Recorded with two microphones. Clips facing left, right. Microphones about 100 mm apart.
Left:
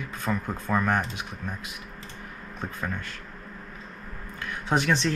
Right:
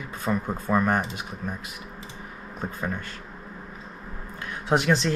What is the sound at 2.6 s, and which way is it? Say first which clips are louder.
Speech: right 2 dB; 5° right (ahead or behind).